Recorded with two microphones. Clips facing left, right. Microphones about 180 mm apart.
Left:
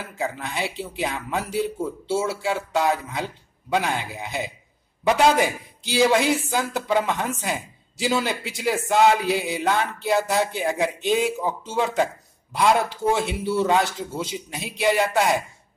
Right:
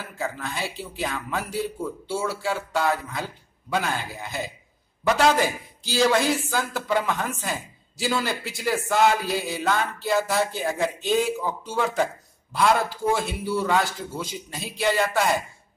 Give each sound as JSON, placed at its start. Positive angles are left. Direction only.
{"t": 0.2, "sound": "a man's voice", "side_deg": 20}
{"t": 13.1, "sound": "speech", "side_deg": 20}